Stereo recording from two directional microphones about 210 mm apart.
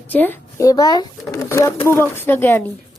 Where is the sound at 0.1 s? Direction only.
10° left (ahead or behind).